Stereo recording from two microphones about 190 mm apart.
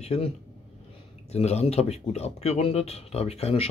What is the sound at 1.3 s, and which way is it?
Speech, 35° left (ahead or behind).